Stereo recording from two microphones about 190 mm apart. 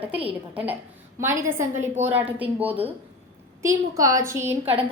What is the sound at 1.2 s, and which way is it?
A woman's voice, 15° right (ahead or behind).